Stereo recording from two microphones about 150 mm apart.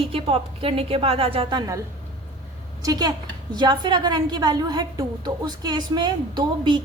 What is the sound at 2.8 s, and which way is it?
A woman's voice, 25° right (ahead or behind).